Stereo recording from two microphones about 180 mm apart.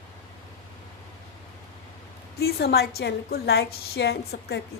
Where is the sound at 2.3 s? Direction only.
60° left (ahead or behind).